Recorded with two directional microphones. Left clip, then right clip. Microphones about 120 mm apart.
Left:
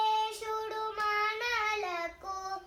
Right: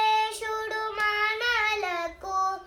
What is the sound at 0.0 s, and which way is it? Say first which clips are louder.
Music: right 6 dB; 10° right (ahead or behind).